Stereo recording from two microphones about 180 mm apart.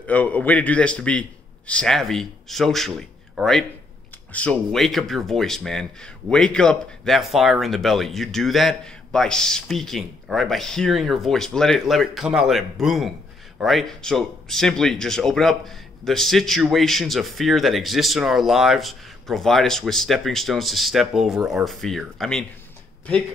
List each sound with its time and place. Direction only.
0.0 s a man's voice: 10° left (ahead or behind)